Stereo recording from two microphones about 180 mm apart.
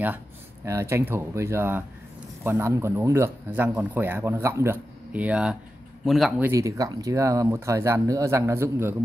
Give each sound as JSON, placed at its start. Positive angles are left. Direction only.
{"t": 0.7, "sound": "speech", "side_deg": -15}
{"t": 6.5, "sound": "speech", "side_deg": -15}